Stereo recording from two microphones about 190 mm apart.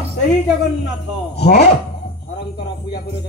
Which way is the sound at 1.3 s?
60° left (ahead or behind).